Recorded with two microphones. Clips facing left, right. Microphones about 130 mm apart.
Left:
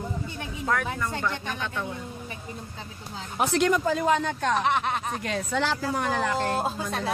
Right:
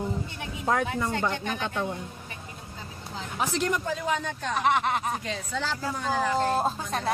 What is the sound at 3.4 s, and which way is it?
Speech, 70° left (ahead or behind).